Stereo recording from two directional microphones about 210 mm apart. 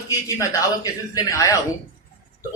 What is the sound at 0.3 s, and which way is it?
Speech, 15° left (ahead or behind).